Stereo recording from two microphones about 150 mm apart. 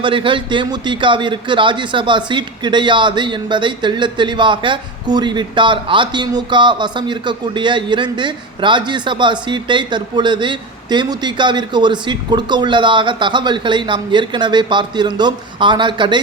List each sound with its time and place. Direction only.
0.0 s a man's voice: 35° right (ahead or behind)